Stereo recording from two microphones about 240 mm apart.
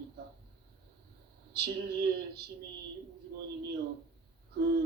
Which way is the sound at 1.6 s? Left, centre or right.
Right.